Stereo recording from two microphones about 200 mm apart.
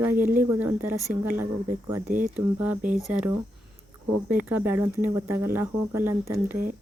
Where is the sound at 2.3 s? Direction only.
10° right (ahead or behind).